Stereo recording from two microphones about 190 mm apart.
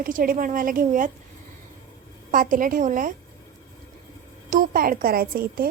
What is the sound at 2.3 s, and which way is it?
Speech, 45° right (ahead or behind).